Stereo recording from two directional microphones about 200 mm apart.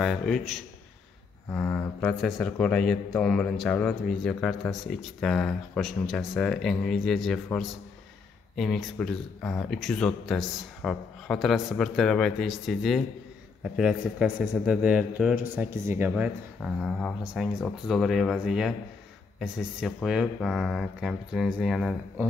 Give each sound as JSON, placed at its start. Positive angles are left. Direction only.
{"t": 0.0, "sound": "speech", "side_deg": 0}
{"t": 1.5, "sound": "speech", "side_deg": 10}
{"t": 8.5, "sound": "speech", "side_deg": 5}
{"t": 9.7, "sound": "speech", "side_deg": 0}
{"t": 16.6, "sound": "speech", "side_deg": 5}